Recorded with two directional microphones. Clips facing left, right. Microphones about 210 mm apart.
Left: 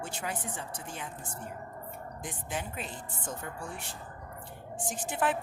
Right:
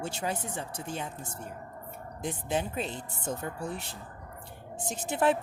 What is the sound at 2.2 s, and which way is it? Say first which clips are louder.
Speech: right 8 dB; 25° right (ahead or behind).